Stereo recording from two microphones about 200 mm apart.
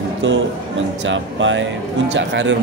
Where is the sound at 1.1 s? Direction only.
65° right (ahead or behind).